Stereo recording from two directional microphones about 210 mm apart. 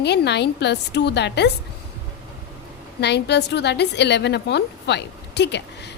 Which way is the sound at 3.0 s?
55° left (ahead or behind).